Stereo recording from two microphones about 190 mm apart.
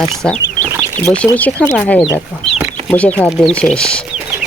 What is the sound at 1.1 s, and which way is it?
Speech, 5° left (ahead or behind).